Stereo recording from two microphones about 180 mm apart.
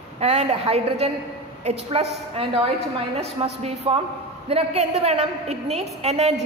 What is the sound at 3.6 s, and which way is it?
A woman's voice, 35° right (ahead or behind).